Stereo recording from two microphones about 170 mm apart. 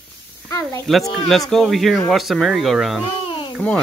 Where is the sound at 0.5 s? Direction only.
20° left (ahead or behind).